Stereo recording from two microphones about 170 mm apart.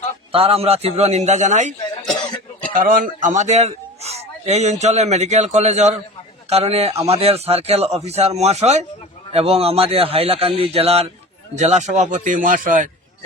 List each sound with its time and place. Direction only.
0.3 s a man's voice: 35° right (ahead or behind)
2.7 s a man's voice: 50° right (ahead or behind)